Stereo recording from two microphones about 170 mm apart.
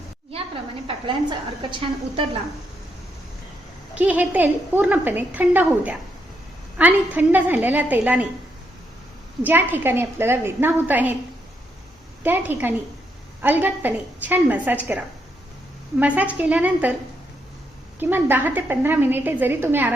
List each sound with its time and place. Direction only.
0.3 s a woman's voice: 35° right (ahead or behind)
3.9 s a woman's voice: 10° right (ahead or behind)
9.4 s a woman's voice: 10° right (ahead or behind)
12.2 s a woman's voice: 10° right (ahead or behind)
18.0 s a woman's voice: 10° right (ahead or behind)